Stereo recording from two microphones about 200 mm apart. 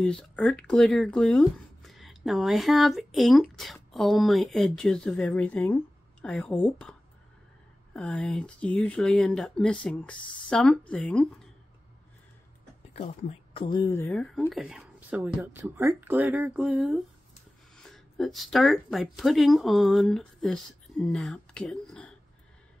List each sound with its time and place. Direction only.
0.0 s speech: centre (ahead or behind)
13.5 s speech: 25° left (ahead or behind)
14.1 s speech: centre (ahead or behind)